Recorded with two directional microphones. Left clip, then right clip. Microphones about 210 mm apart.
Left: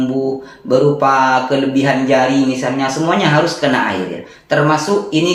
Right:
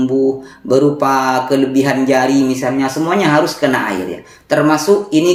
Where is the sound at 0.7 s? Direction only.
50° right (ahead or behind).